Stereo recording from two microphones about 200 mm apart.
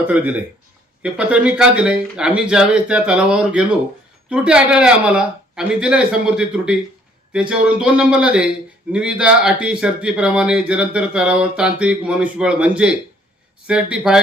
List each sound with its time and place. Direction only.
0.1 s speech: 5° right (ahead or behind)